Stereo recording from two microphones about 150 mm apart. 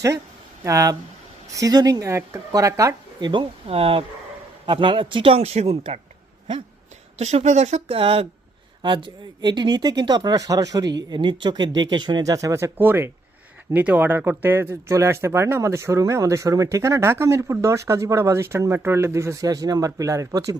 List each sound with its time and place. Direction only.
0.6 s speech: 20° right (ahead or behind); by 6.0 s 40° right (ahead or behind)
7.2 s speech: 50° right (ahead or behind); by 20.6 s 25° right (ahead or behind)